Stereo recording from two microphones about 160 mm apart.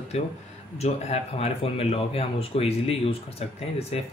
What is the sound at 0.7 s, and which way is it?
Speech, 45° left (ahead or behind).